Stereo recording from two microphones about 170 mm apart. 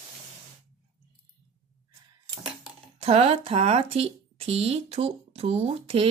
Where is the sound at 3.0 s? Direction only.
35° right (ahead or behind).